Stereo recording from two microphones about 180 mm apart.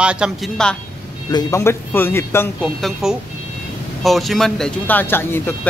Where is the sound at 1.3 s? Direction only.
20° left (ahead or behind).